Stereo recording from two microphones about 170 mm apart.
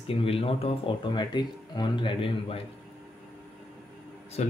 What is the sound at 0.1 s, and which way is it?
Speech, 35° left (ahead or behind).